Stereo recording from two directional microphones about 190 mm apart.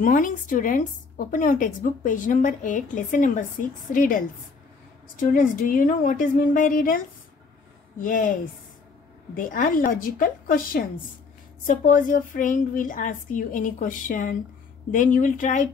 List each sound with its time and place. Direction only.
0.0 s a woman's voice: 45° left (ahead or behind)
8.0 s a woman's voice: 45° left (ahead or behind)